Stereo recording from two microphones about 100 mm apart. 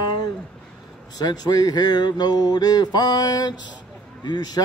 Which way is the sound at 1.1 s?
40° left (ahead or behind).